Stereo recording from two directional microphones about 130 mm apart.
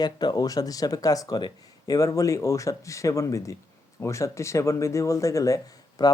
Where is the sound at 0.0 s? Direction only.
30° left (ahead or behind).